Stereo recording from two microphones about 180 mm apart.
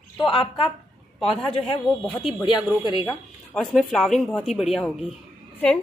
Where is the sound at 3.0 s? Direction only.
5° left (ahead or behind).